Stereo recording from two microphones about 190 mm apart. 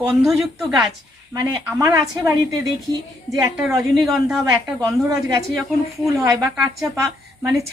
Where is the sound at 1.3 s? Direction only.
20° right (ahead or behind).